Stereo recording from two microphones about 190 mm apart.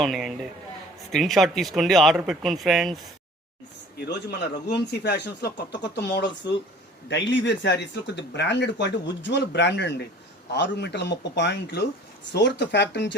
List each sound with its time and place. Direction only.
0.0 s speech: centre (ahead or behind)
4.0 s speech: 60° left (ahead or behind)